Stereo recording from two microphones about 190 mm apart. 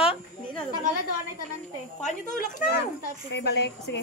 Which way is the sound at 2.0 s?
40° left (ahead or behind).